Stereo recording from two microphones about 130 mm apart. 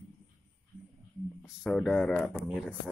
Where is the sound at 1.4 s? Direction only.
Centre (ahead or behind).